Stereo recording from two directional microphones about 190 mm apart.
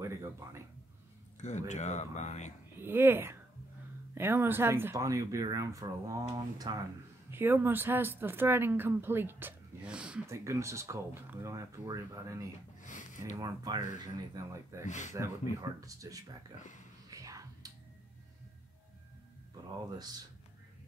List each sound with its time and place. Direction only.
0.0 s a sound: 15° right (ahead or behind)
1.7 s speech: 40° left (ahead or behind)
2.8 s speech: 10° right (ahead or behind)
10.2 s speech: 15° right (ahead or behind)
12.8 s speech: 40° left (ahead or behind)
13.4 s speech: 20° right (ahead or behind)
14.9 s speech: 40° left (ahead or behind)
15.1 s speech: 20° right (ahead or behind)
17.1 s whispering: 20° right (ahead or behind)
20.0 s speech: 20° right (ahead or behind)